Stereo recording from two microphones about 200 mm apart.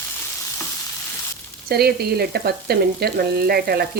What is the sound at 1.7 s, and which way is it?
Frying, 50° right (ahead or behind).